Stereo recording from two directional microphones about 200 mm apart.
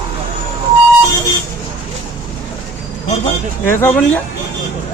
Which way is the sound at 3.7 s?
10° left (ahead or behind).